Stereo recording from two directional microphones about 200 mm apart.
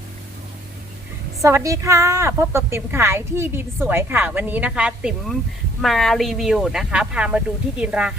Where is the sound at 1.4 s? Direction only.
15° right (ahead or behind).